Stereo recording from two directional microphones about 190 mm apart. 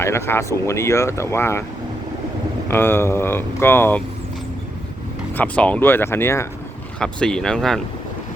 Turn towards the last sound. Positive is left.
turn(degrees=5)  # may be behind; listen again after turning